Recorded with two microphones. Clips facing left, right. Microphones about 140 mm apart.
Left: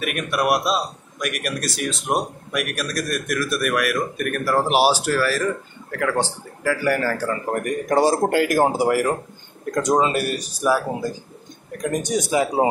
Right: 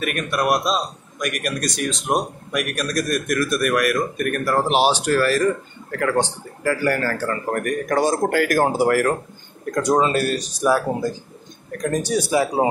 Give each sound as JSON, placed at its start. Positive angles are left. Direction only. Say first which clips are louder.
{"t": 0.0, "sound": "speech", "louder": "even", "side_deg": 10}